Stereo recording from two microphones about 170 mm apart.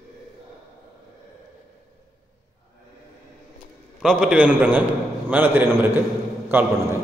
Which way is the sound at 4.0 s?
5° right (ahead or behind).